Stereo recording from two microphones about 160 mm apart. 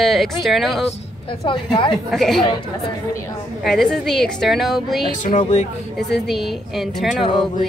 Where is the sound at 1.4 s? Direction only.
30° left (ahead or behind).